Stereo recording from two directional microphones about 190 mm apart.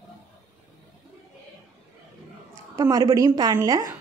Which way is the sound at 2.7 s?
20° right (ahead or behind).